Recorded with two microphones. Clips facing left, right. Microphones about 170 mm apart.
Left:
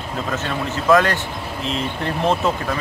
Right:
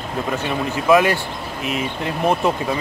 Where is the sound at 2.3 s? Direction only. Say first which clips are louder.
Right 3 dB; 15° right (ahead or behind).